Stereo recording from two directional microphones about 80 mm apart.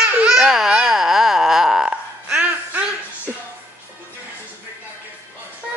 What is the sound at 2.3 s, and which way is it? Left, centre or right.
Music, centre.